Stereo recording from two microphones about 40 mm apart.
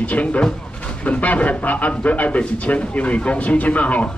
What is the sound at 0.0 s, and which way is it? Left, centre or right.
A man's voice, left.